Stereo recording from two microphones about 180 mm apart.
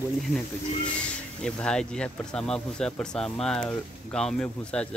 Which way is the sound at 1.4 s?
5° left (ahead or behind).